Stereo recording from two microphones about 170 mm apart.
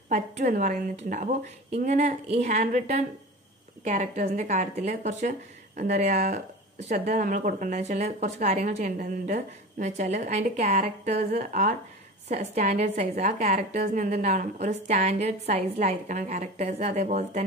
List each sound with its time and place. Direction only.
0.1 s speech: 45° right (ahead or behind)